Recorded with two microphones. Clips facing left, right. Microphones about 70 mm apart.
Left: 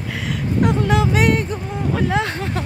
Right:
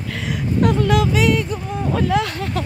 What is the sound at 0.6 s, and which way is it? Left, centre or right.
Speech, left.